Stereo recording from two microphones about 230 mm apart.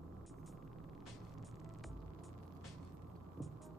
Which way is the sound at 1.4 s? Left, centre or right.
Centre.